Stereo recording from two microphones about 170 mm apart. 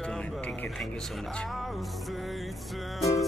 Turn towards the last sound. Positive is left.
turn(degrees=0)  # may be behind; listen again after turning